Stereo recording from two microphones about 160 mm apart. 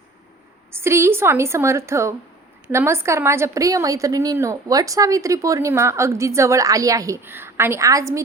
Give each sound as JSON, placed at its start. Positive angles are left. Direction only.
{"t": 0.7, "sound": "a woman's voice", "side_deg": -15}